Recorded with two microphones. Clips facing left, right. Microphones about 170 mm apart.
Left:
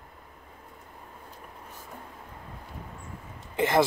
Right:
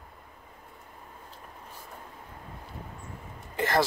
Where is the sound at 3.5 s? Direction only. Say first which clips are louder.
Left 3 dB; 20° left (ahead or behind).